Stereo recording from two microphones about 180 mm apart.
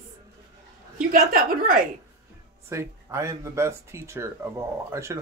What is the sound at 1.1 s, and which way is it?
Speech, 50° right (ahead or behind).